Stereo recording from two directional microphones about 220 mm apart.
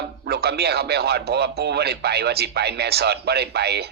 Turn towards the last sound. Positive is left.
turn(degrees=-45)  # may be behind; listen again after turning